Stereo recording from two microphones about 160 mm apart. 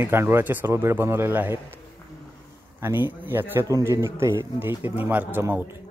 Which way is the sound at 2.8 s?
15° right (ahead or behind).